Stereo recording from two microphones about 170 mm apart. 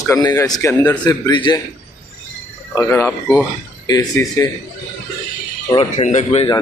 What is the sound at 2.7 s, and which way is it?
Speech, 15° left (ahead or behind).